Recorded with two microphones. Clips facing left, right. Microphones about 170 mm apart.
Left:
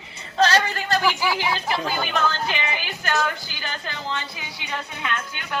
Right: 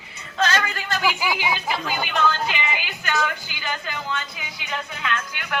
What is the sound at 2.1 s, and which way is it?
Speech, 40° left (ahead or behind).